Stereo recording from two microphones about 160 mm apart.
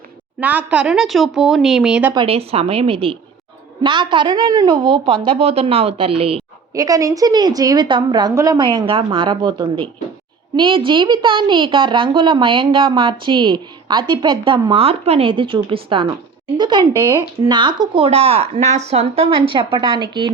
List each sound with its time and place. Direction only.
0.3 s speech: 10° right (ahead or behind)
2.1 s a woman's voice: 35° right (ahead or behind)
6.7 s a woman's voice: 20° right (ahead or behind)